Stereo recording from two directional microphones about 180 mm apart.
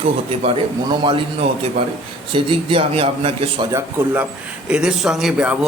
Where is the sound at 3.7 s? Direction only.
10° right (ahead or behind).